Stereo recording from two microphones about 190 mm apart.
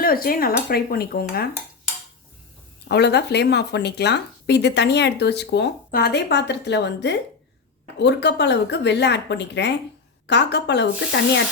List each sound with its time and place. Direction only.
0.0 s speech: 50° left (ahead or behind)
2.9 s speech: 60° left (ahead or behind)